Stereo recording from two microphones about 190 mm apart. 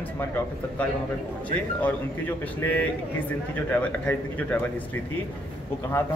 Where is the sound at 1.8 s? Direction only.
10° left (ahead or behind).